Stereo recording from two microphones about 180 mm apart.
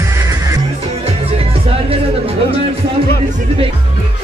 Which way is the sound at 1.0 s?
35° right (ahead or behind).